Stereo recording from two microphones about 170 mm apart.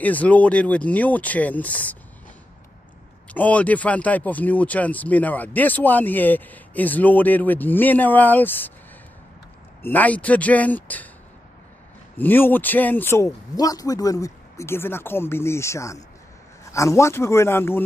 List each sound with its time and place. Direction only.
0.0 s speech: 10° left (ahead or behind)
3.3 s speech: 10° left (ahead or behind)
9.8 s speech: 10° left (ahead or behind)
12.2 s speech: 10° left (ahead or behind)